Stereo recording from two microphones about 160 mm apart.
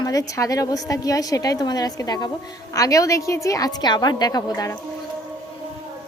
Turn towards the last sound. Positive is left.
turn(degrees=25)  # may be behind; listen again after turning